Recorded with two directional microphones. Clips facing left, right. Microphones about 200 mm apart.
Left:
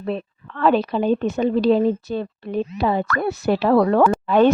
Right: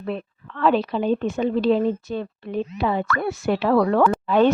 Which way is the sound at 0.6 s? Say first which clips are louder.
Left 2 dB; 45° left (ahead or behind).